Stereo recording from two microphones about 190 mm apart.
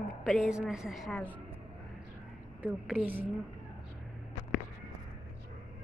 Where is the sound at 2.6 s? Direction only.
5° right (ahead or behind).